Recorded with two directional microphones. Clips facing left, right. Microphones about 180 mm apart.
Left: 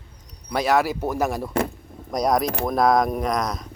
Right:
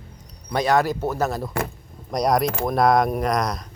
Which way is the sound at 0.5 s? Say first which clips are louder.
Right 1 dB; 5° left (ahead or behind).